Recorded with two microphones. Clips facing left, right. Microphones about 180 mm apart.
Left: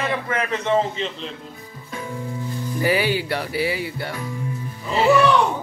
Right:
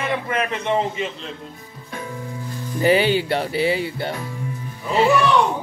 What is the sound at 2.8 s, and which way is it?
Speech, 25° right (ahead or behind).